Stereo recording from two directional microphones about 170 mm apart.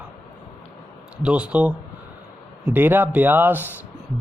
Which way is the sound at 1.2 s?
5° right (ahead or behind).